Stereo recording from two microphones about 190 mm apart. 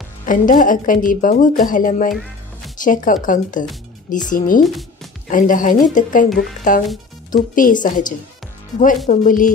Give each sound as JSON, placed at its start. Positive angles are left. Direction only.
{"t": 0.3, "sound": "a woman's voice", "side_deg": 45}